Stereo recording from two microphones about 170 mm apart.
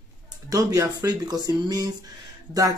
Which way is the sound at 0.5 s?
20° right (ahead or behind).